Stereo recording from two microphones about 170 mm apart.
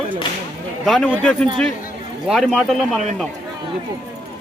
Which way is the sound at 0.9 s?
5° left (ahead or behind).